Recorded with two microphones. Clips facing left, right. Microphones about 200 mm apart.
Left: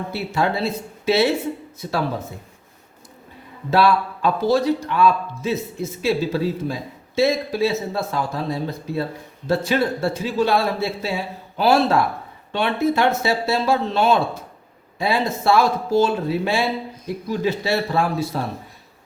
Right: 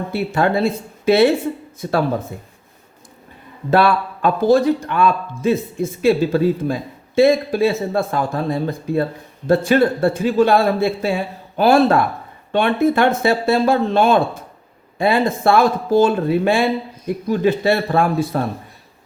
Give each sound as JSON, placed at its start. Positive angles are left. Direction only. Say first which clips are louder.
{"t": 0.3, "sound": "a man's voice", "louder": "right 4 dB", "side_deg": -55}
{"t": 3.7, "sound": "a man's voice", "louder": "right 2 dB", "side_deg": -55}